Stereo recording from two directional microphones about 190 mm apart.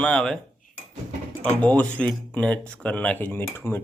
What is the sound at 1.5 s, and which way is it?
Speech, 5° left (ahead or behind).